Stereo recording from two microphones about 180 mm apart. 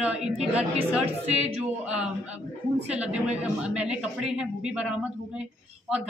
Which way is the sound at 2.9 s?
5° right (ahead or behind).